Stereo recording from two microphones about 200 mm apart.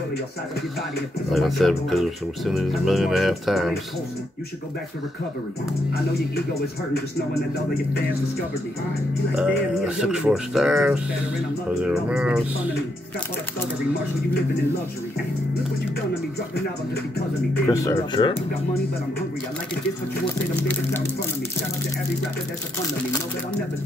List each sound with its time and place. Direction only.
1.3 s speech: centre (ahead or behind)
9.3 s speech: 5° right (ahead or behind)
17.6 s speech: 15° left (ahead or behind)